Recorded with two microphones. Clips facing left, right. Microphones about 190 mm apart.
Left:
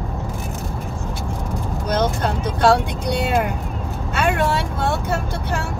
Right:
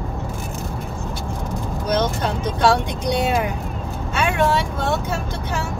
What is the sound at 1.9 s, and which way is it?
Vehicle, 55° left (ahead or behind).